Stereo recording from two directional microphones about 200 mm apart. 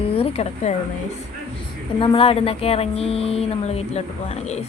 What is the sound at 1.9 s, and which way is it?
Speech, 25° left (ahead or behind).